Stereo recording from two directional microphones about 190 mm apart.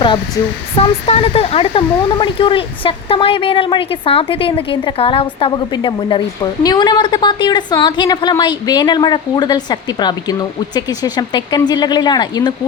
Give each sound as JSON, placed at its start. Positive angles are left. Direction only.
{"t": 1.0, "sound": "speech", "side_deg": 30}